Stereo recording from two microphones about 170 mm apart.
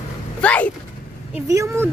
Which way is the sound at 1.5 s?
15° right (ahead or behind).